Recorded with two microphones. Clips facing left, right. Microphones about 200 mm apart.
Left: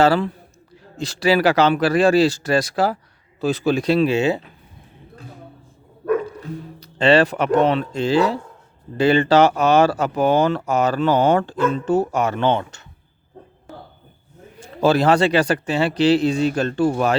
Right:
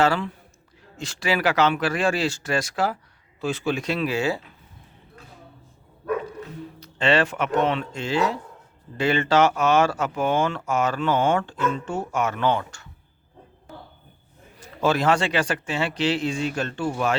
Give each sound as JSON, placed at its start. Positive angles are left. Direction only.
{"t": 0.0, "sound": "speech", "side_deg": 35}
{"t": 6.7, "sound": "speech", "side_deg": 35}
{"t": 14.6, "sound": "speech", "side_deg": 35}